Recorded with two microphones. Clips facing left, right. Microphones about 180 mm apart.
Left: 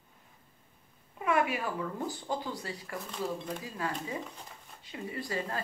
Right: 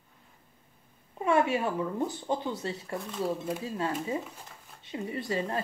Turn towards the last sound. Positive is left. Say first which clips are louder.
# right 4 dB
turn(degrees=-25)  # may be behind; listen again after turning